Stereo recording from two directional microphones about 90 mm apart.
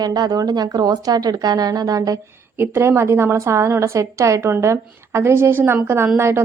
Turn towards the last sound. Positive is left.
turn(degrees=-25)  # may be behind; listen again after turning